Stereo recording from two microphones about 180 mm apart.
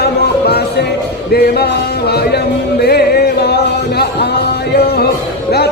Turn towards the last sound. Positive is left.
turn(degrees=65)  # may be behind; listen again after turning